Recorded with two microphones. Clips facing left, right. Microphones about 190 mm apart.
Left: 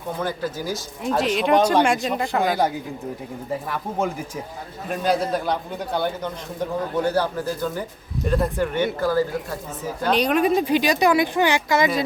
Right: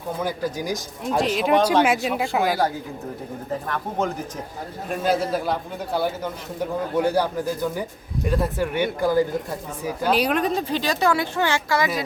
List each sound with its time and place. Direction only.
0.2 s a man's voice: 10° right (ahead or behind)
1.0 s speech: centre (ahead or behind)
3.5 s a woman's voice: 10° left (ahead or behind)
4.9 s a man's voice: 5° right (ahead or behind)
10.3 s a woman's voice: 10° left (ahead or behind)